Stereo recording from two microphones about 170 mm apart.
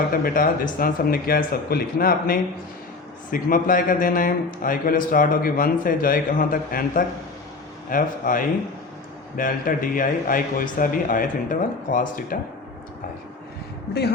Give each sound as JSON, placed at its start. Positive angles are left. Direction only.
{"t": 0.1, "sound": "a man's voice", "side_deg": 55}